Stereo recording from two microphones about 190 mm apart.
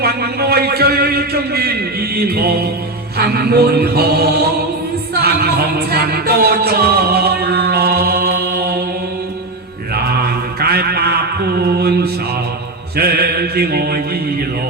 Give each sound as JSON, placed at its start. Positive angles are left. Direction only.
{"t": 0.0, "sound": "a sound", "side_deg": -55}
{"t": 3.2, "sound": "mantra", "side_deg": -55}
{"t": 5.1, "sound": "music", "side_deg": -55}
{"t": 9.9, "sound": "mantra", "side_deg": -55}
{"t": 13.0, "sound": "music", "side_deg": -55}